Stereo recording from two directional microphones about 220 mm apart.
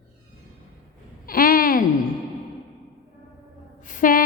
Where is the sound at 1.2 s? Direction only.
40° left (ahead or behind).